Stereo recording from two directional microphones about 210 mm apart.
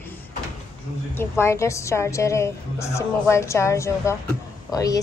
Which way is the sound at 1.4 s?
15° left (ahead or behind).